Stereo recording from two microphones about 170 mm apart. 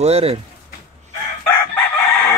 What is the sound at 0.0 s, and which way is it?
Speech, 35° right (ahead or behind).